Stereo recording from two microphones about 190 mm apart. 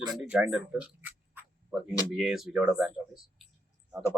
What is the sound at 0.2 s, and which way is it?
Speech, 5° right (ahead or behind).